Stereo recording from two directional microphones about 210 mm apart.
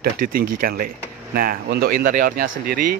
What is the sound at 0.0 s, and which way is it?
Speech, 45° right (ahead or behind).